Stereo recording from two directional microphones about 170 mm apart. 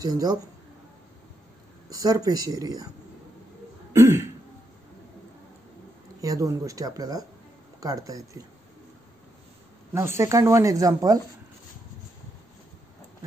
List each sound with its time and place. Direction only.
0.0 s speech: 20° right (ahead or behind)
1.9 s speech: 20° right (ahead or behind)
3.9 s throat clearing: 15° right (ahead or behind)
6.2 s speech: 20° right (ahead or behind)
9.9 s speech: 15° right (ahead or behind)